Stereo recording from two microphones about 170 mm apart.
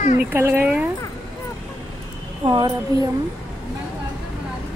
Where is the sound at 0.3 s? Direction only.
10° right (ahead or behind).